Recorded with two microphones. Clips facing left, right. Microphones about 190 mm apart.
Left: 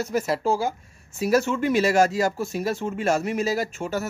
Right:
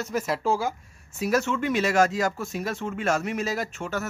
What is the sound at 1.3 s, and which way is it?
Speech, 35° left (ahead or behind).